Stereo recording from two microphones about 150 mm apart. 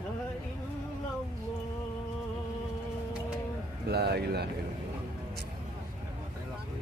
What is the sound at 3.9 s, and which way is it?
Speech, 90° right.